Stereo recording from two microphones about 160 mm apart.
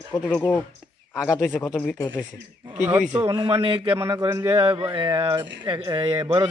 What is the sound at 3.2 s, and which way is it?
Speech, 35° right (ahead or behind).